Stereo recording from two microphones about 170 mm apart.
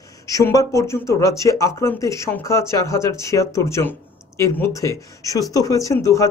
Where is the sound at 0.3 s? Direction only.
20° left (ahead or behind).